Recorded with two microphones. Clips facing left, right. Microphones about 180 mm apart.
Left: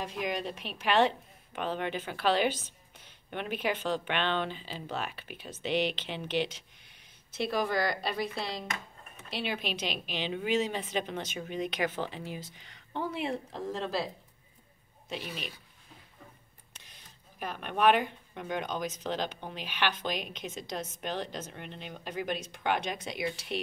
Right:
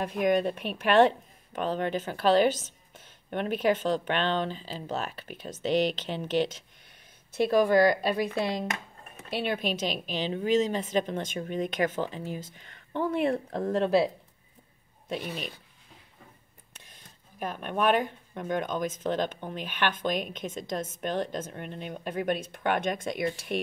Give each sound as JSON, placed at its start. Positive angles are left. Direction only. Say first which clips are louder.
{"t": 0.0, "sound": "speech", "louder": "right 9 dB", "side_deg": -50}
{"t": 15.0, "sound": "speech", "louder": "right 5 dB", "side_deg": -45}
{"t": 16.7, "sound": "speech", "louder": "right 3 dB", "side_deg": -50}